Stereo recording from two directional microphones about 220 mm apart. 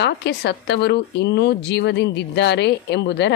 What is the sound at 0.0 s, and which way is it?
Speech, 50° left (ahead or behind).